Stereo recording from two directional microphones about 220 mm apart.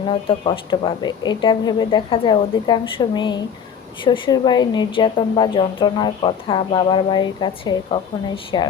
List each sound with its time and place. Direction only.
0.1 s a woman's voice: 25° left (ahead or behind)